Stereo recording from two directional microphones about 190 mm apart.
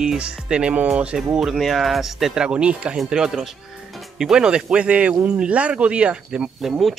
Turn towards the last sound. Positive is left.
turn(degrees=0)  # may be behind; listen again after turning